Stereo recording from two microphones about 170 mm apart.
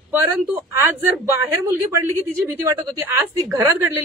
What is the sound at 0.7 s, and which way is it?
Speech, 15° right (ahead or behind).